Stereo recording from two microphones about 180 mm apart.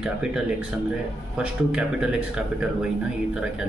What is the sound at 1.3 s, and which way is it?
Speech, 5° right (ahead or behind).